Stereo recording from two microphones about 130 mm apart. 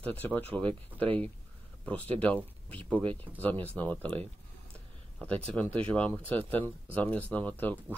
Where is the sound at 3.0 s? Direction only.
45° right (ahead or behind).